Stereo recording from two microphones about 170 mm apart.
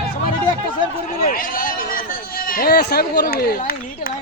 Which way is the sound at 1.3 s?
55° left (ahead or behind).